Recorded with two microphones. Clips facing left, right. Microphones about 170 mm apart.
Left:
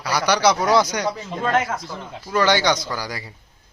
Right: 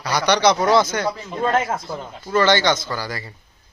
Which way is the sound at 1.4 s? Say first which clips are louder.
Right 1 dB; 30° right (ahead or behind).